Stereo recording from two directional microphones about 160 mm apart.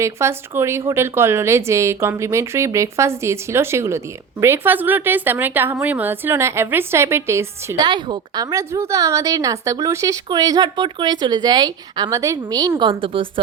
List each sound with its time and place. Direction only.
0.0 s a woman's voice: 15° right (ahead or behind)
7.9 s a woman's voice: 30° right (ahead or behind)